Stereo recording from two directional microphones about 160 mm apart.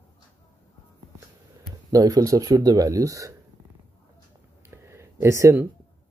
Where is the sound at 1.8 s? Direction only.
20° right (ahead or behind).